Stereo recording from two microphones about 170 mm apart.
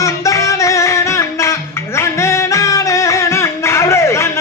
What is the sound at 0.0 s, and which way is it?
Music, 20° left (ahead or behind).